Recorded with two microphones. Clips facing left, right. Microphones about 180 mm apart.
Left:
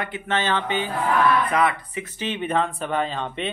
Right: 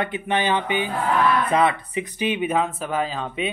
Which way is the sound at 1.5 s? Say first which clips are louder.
Right 2 dB; 25° right (ahead or behind).